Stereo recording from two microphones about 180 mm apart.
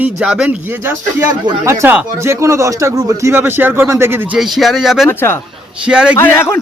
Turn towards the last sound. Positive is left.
turn(degrees=10)  # may be behind; listen again after turning